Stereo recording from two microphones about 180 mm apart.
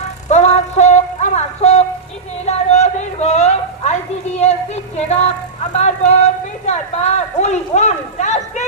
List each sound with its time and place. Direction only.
0.0 s music: 40° left (ahead or behind)
2.5 s a sound: 35° left (ahead or behind)
5.7 s speech: 40° left (ahead or behind)